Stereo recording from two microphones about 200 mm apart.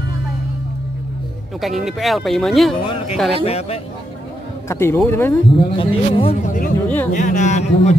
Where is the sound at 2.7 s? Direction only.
25° left (ahead or behind).